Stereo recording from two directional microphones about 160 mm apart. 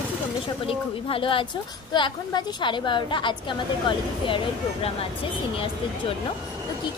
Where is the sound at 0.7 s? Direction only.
35° left (ahead or behind).